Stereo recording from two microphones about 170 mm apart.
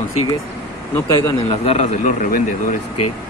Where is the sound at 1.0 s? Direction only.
20° left (ahead or behind).